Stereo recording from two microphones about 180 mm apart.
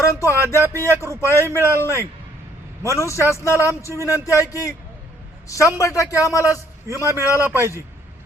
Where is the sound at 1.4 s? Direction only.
15° right (ahead or behind).